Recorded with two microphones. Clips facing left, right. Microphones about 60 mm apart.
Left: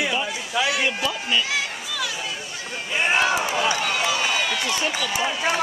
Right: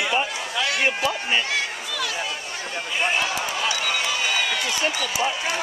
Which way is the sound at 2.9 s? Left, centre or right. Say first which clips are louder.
Left 4 dB; centre.